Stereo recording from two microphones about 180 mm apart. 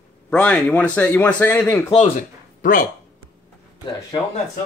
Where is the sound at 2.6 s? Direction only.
50° left (ahead or behind).